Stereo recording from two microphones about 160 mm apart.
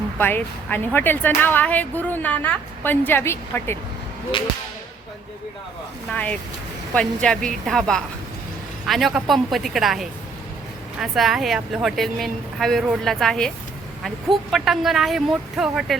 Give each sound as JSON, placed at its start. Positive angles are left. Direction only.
{"t": 0.2, "sound": "speech", "side_deg": 10}
{"t": 6.1, "sound": "a woman's voice", "side_deg": 10}